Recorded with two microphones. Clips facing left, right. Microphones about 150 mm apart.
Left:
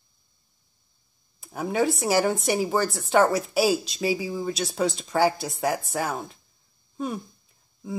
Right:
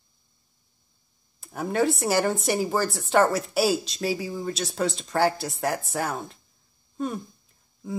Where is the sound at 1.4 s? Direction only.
Centre (ahead or behind).